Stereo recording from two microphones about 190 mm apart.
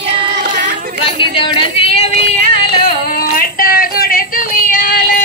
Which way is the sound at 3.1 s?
50° left (ahead or behind).